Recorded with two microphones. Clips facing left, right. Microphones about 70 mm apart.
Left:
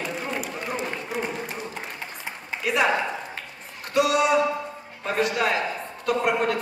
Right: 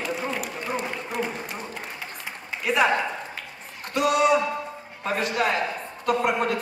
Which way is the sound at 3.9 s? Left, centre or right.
Right.